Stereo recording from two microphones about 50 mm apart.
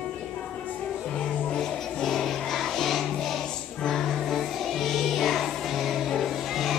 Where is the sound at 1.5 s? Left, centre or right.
Centre.